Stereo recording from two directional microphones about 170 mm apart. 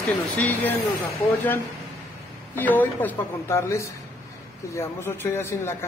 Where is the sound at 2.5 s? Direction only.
10° left (ahead or behind).